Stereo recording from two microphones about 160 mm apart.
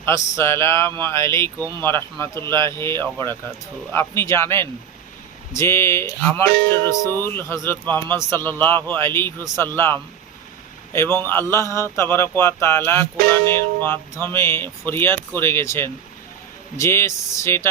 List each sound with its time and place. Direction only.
0.0 s speech: 20° left (ahead or behind)
2.5 s speech: 30° right (ahead or behind)
2.7 s speech: 15° left (ahead or behind)